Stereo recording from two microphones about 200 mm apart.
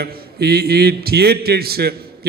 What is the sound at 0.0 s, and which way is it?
A man's voice, 55° right (ahead or behind).